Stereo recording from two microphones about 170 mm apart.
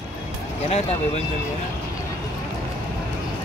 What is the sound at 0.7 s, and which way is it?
Speech, 40° left (ahead or behind).